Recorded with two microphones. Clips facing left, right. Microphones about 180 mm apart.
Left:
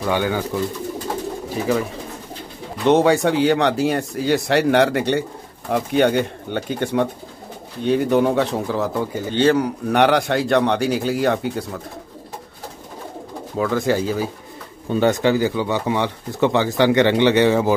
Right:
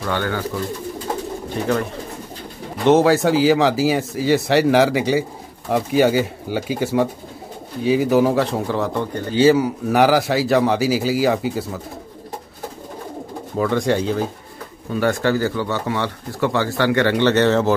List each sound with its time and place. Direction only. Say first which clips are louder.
0.0 s speech: left 2 dB; 15° left (ahead or behind)
1.5 s a man's voice: even; 5° left (ahead or behind)
9.3 s a man's voice: right 3 dB; 5° right (ahead or behind)
13.6 s a man's voice: right 1 dB; centre (ahead or behind)
14.9 s speech: left 2 dB; 20° left (ahead or behind)